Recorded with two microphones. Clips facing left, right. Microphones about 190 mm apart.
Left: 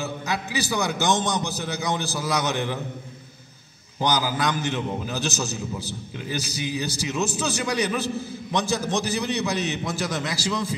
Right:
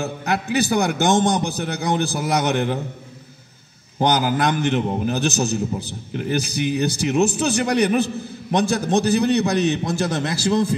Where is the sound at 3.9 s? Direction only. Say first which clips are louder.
Right 5 dB; 60° right (ahead or behind).